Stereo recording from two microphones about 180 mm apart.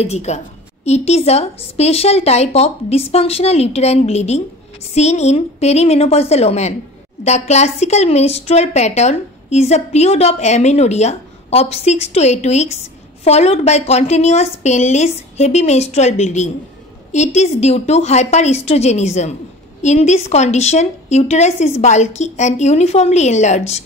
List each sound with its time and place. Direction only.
0.0 s a woman's voice: 40° left (ahead or behind)